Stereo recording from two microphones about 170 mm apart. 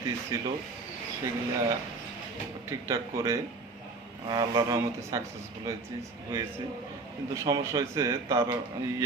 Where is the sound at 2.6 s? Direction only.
15° right (ahead or behind).